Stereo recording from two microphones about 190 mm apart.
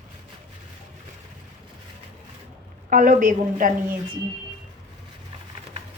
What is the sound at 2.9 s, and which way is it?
Speech, 45° right (ahead or behind).